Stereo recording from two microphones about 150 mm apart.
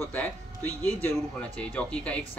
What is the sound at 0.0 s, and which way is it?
Speech, 10° left (ahead or behind).